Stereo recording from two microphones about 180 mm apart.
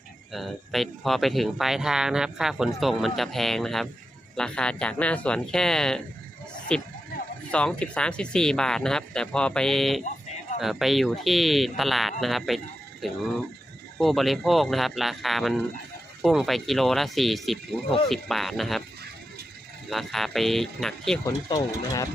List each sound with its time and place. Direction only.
0.3 s speech: centre (ahead or behind)
19.9 s speech: centre (ahead or behind)
21.2 s speech: 20° left (ahead or behind)